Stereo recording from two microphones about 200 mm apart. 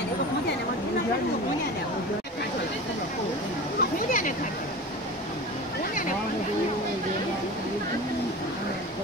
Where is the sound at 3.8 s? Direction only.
40° left (ahead or behind).